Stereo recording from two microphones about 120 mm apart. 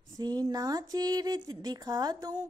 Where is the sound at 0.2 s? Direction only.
35° right (ahead or behind).